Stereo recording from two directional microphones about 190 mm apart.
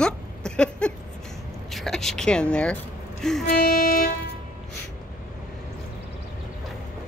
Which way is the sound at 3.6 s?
50° left (ahead or behind).